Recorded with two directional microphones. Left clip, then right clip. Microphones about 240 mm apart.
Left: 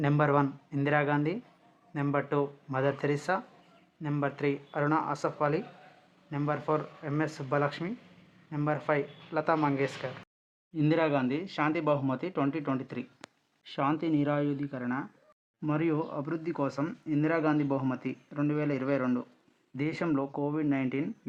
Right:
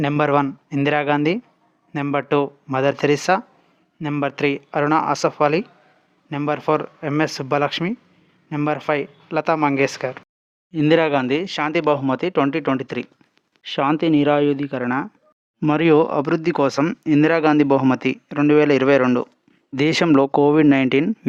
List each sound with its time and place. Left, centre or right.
0.0 s speech: right